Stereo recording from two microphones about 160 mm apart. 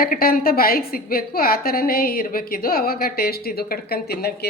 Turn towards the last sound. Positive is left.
turn(degrees=75)  # may be behind; listen again after turning